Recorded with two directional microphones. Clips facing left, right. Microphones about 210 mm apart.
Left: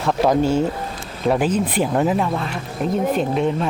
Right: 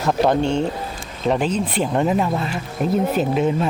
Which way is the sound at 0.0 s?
Centre (ahead or behind).